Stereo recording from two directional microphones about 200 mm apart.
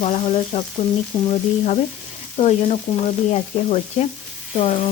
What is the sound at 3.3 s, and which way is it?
Frying, 30° left (ahead or behind).